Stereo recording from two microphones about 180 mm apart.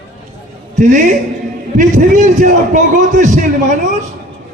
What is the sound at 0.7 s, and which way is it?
A man's voice, 45° right (ahead or behind).